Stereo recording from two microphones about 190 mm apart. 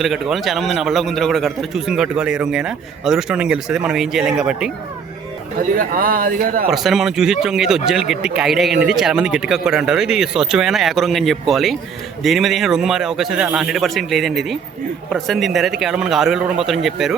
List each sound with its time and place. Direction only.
0.0 s a man's voice: centre (ahead or behind)
5.7 s speech: 50° right (ahead or behind)
6.7 s a man's voice: centre (ahead or behind)